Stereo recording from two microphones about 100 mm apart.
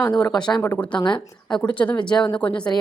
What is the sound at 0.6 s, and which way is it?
Speech, 25° left (ahead or behind).